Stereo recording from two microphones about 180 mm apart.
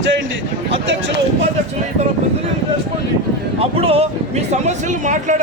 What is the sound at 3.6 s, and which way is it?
Speech, 35° right (ahead or behind).